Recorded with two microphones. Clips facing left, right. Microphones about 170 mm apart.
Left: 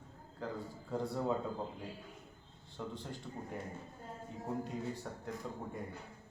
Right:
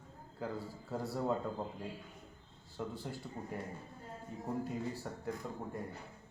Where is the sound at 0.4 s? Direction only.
5° right (ahead or behind).